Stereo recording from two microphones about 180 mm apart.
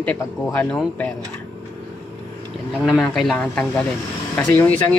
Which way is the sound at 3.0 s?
5° left (ahead or behind).